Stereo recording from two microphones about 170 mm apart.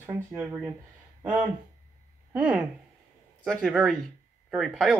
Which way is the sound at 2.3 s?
10° right (ahead or behind).